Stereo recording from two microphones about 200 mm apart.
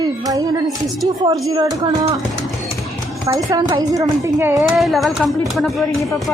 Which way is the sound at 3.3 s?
20° right (ahead or behind).